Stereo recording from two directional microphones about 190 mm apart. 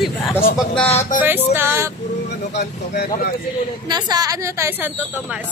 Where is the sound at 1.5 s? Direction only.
10° right (ahead or behind).